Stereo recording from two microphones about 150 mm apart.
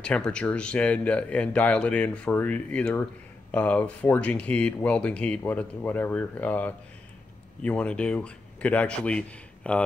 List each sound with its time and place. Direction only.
0.0 s speech: 5° left (ahead or behind)